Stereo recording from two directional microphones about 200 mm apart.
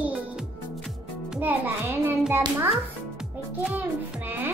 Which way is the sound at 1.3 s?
10° right (ahead or behind).